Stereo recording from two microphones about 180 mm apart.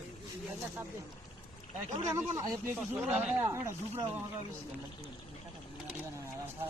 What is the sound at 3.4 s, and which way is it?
Speech, 15° right (ahead or behind).